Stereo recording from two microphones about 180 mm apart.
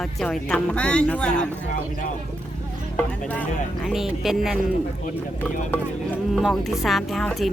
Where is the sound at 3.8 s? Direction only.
Centre (ahead or behind).